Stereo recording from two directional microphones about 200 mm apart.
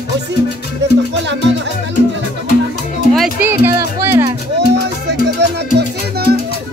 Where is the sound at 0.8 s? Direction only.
60° right (ahead or behind).